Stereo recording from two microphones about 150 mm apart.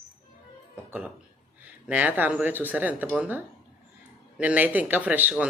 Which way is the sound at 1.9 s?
10° right (ahead or behind).